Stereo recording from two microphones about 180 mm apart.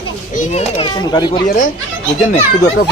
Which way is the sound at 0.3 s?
40° left (ahead or behind).